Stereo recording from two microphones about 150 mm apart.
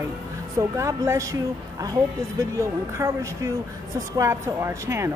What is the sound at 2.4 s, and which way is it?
A woman's voice, 20° right (ahead or behind).